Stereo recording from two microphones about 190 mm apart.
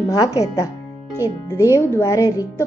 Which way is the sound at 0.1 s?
20° left (ahead or behind).